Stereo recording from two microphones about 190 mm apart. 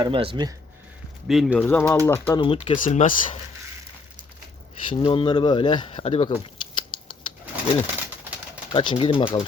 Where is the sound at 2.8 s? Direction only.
40° left (ahead or behind).